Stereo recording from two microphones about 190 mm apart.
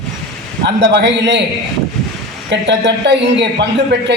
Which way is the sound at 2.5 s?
65° right (ahead or behind).